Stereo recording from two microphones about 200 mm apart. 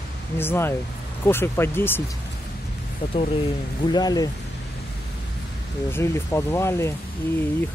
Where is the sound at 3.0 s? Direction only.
25° left (ahead or behind).